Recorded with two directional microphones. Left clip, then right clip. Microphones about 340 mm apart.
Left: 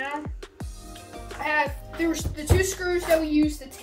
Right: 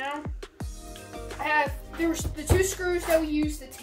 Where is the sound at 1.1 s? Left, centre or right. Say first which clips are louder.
Left 1 dB; centre.